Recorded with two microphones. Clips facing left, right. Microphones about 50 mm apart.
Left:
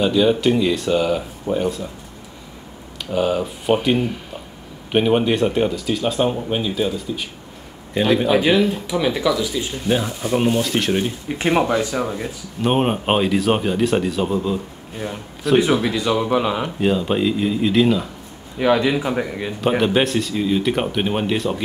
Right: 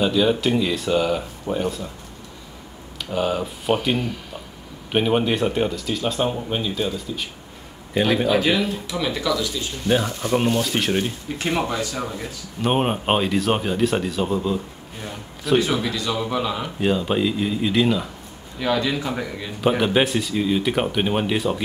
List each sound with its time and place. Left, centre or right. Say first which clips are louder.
0.0 s speech: left 3 dB; centre
3.1 s speech: left 3 dB; centre
8.3 s speech: left 4 dB; centre
11.2 s speech: left 5 dB; left
12.6 s speech: left 2 dB; centre; by 16.6 s left
16.6 s speech: left 2 dB; centre
18.6 s speech: left 5 dB; left
19.8 s speech: left 2 dB; centre